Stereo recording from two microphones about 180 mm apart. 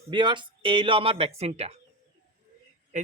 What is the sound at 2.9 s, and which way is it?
Speech, 40° right (ahead or behind).